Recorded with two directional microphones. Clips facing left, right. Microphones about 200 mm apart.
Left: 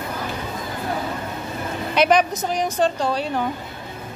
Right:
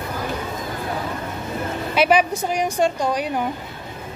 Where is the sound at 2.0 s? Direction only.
10° right (ahead or behind).